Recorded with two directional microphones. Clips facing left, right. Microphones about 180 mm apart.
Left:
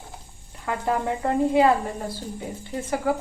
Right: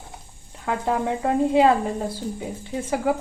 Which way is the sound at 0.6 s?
15° right (ahead or behind).